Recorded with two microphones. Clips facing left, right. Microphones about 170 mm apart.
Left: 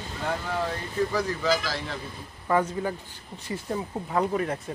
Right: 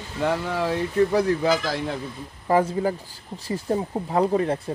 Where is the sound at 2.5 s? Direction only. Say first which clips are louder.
Right 4 dB; 30° right (ahead or behind).